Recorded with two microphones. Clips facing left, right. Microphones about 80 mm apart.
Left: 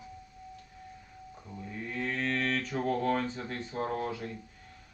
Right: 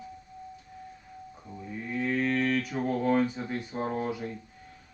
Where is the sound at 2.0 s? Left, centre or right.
Centre.